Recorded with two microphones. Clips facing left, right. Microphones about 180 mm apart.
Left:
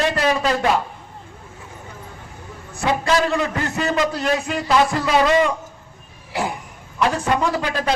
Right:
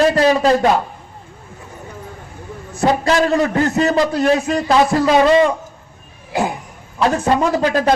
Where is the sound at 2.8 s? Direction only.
40° right (ahead or behind).